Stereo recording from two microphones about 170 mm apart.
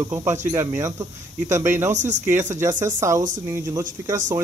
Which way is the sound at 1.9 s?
45° right (ahead or behind).